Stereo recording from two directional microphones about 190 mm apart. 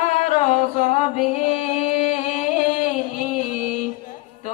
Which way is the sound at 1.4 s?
35° left (ahead or behind).